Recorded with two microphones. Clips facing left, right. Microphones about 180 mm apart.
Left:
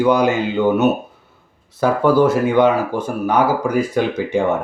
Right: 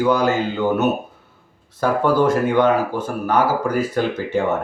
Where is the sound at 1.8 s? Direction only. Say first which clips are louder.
Left 3 dB; 10° left (ahead or behind).